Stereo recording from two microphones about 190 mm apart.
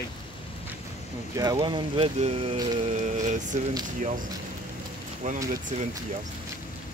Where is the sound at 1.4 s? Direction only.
20° right (ahead or behind); by 3.6 s 40° right (ahead or behind).